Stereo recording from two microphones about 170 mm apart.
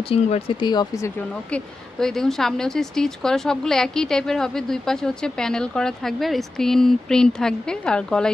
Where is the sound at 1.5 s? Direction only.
5° left (ahead or behind).